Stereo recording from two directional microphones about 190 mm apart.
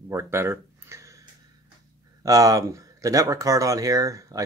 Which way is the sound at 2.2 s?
15° right (ahead or behind).